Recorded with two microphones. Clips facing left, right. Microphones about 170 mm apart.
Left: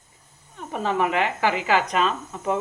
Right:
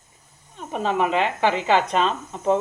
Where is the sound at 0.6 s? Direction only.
20° right (ahead or behind).